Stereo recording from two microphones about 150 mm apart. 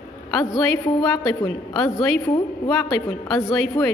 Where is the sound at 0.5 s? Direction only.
25° left (ahead or behind).